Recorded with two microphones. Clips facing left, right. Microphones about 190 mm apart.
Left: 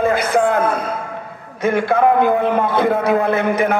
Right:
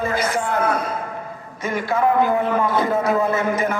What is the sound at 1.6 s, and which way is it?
A man's voice, 60° left (ahead or behind).